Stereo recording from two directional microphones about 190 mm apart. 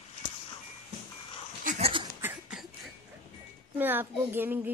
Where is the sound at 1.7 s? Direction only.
30° right (ahead or behind).